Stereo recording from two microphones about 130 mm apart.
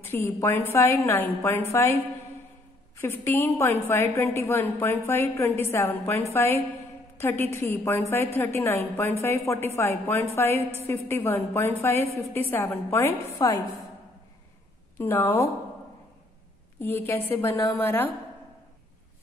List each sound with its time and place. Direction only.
0.0 s a woman's voice: 15° left (ahead or behind)
3.0 s a woman's voice: 15° left (ahead or behind)
13.4 s a woman's voice: 30° left (ahead or behind)
15.0 s a woman's voice: 15° left (ahead or behind)
16.8 s a woman's voice: 20° left (ahead or behind)